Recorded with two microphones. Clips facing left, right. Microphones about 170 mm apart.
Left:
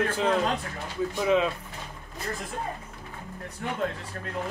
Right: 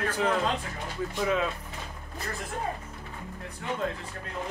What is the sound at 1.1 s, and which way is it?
Speech, 20° left (ahead or behind).